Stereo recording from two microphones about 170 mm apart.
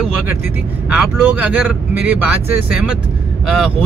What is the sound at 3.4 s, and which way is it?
Speech, centre (ahead or behind).